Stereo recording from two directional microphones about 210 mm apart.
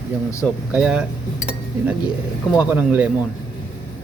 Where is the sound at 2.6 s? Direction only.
10° right (ahead or behind).